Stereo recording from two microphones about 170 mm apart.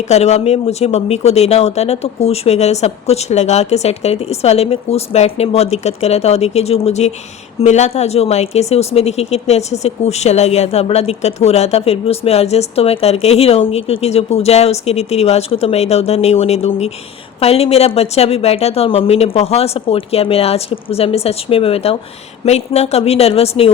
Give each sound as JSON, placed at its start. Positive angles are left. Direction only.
{"t": 0.1, "sound": "speech", "side_deg": 40}